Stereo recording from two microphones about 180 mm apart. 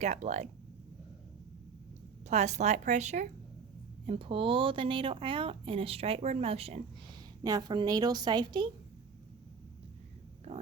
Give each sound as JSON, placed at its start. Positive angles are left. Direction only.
{"t": 0.0, "sound": "speech", "side_deg": -40}
{"t": 2.2, "sound": "a woman's voice", "side_deg": -40}
{"t": 10.5, "sound": "speech", "side_deg": -35}